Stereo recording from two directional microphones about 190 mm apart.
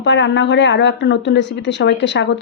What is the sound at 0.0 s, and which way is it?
A woman's voice, 70° left (ahead or behind).